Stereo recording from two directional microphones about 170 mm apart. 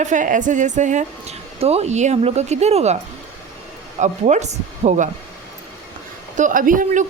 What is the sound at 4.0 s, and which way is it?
A woman's voice, 45° right (ahead or behind).